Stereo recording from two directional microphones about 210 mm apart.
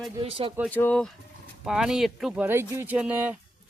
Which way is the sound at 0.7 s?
5° left (ahead or behind).